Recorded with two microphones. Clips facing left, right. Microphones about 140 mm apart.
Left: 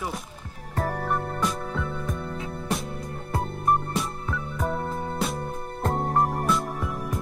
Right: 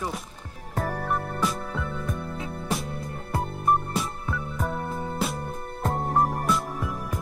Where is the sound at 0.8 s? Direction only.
Centre (ahead or behind).